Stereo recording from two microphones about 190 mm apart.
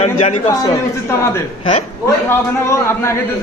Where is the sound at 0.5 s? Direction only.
20° left (ahead or behind).